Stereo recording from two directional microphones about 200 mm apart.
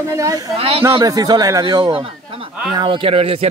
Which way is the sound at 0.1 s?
15° right (ahead or behind).